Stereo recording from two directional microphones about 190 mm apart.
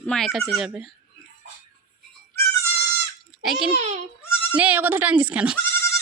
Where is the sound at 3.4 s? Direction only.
Centre (ahead or behind).